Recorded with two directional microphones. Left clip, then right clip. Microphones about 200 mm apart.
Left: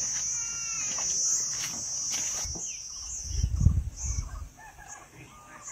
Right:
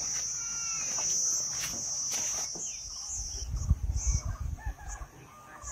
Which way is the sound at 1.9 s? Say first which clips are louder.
Left 1 dB; 35° right (ahead or behind).